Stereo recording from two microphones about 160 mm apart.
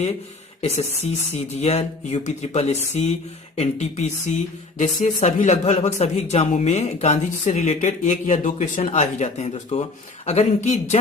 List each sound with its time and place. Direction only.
0.6 s speech: 45° left (ahead or behind)